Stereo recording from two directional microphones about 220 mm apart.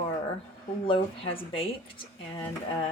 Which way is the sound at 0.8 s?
25° left (ahead or behind).